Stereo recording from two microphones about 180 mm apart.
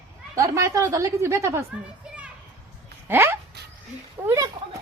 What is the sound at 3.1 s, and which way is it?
Speech, 15° right (ahead or behind).